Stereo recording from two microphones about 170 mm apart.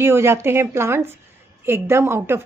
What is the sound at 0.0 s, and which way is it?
A woman's voice, 15° right (ahead or behind).